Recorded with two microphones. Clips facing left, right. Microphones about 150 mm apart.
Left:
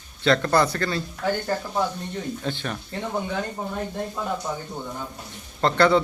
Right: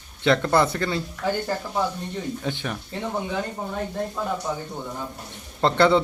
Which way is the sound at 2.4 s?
15° right (ahead or behind).